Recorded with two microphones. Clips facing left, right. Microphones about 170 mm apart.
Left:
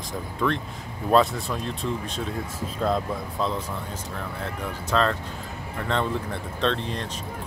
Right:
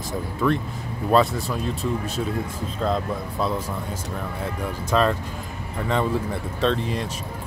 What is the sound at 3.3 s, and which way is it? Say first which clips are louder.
Speech: right 2 dB; 10° right (ahead or behind).